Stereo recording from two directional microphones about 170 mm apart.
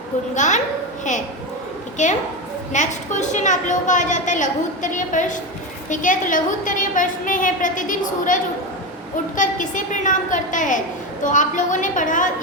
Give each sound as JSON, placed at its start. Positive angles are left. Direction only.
{"t": 0.3, "sound": "a woman's voice", "side_deg": 45}
{"t": 2.0, "sound": "a woman's voice", "side_deg": 45}